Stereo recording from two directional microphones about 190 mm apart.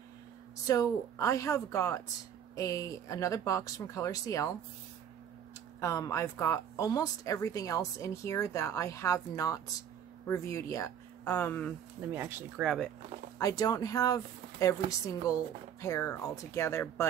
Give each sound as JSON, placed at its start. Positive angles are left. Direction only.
{"t": 0.7, "sound": "speech", "side_deg": 15}
{"t": 5.8, "sound": "speech", "side_deg": 15}
{"t": 12.1, "sound": "speech", "side_deg": -10}
{"t": 13.4, "sound": "a woman's voice", "side_deg": 20}